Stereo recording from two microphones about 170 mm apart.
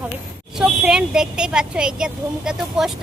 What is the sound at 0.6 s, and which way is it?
A woman's voice, 5° right (ahead or behind).